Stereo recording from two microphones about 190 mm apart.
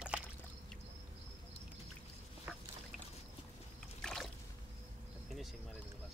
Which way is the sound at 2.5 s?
5° right (ahead or behind).